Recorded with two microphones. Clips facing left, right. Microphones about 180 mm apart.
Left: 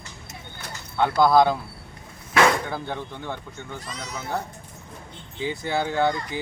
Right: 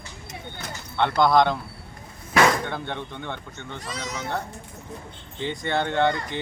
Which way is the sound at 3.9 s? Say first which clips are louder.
Right 3 dB; 90° right.